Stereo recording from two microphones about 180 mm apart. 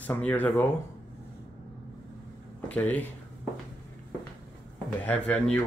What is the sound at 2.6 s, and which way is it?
Speech, 10° left (ahead or behind).